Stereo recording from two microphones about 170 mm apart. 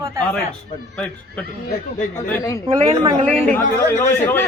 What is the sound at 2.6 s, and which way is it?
Speech, 30° right (ahead or behind).